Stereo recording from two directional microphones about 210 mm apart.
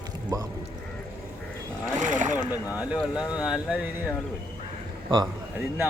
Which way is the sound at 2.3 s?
10° right (ahead or behind).